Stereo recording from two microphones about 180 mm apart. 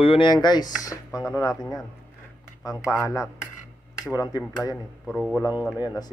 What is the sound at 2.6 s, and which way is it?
Speech, 20° left (ahead or behind).